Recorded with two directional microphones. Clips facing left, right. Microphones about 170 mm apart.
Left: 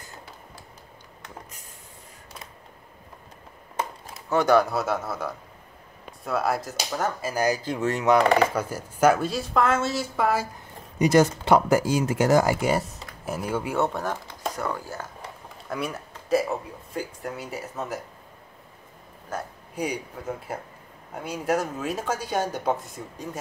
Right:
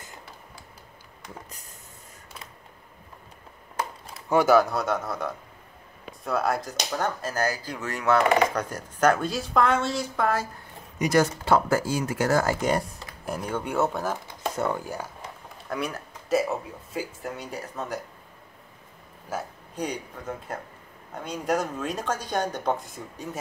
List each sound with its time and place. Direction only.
4.3 s speech: 5° right (ahead or behind); by 8.2 s 20° left (ahead or behind)
8.4 s speech: 5° left (ahead or behind)
11.0 s speech: 25° left (ahead or behind); by 14.5 s centre (ahead or behind)
14.5 s speech: 25° right (ahead or behind)
15.7 s speech: centre (ahead or behind)
19.3 s speech: 5° right (ahead or behind)
19.7 s speech: 10° left (ahead or behind)